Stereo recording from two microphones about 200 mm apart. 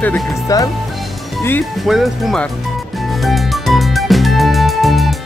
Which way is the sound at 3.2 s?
Centre (ahead or behind).